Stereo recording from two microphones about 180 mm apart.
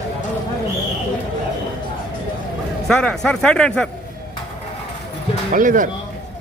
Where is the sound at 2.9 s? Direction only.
5° left (ahead or behind).